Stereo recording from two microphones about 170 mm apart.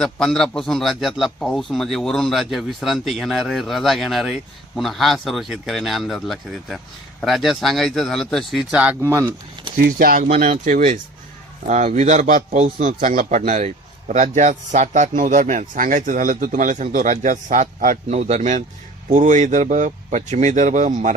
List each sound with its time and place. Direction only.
0.0 s a man's voice: 5° left (ahead or behind); by 9.3 s 15° right (ahead or behind)
9.8 s speech: 60° right (ahead or behind)
10.2 s a man's voice: 40° right (ahead or behind)